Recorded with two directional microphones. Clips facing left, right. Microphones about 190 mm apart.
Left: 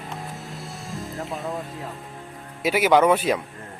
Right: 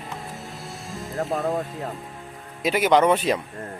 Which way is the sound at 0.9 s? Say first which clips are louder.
Right 5 dB; centre (ahead or behind).